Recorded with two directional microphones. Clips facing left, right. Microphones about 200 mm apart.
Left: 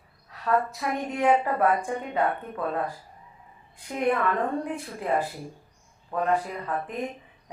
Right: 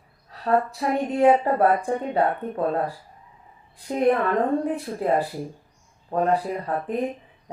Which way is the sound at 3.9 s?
35° right (ahead or behind).